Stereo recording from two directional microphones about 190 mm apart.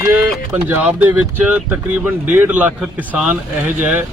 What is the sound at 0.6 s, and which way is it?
Speech, 10° right (ahead or behind).